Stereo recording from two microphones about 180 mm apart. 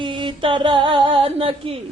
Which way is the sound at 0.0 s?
25° right (ahead or behind).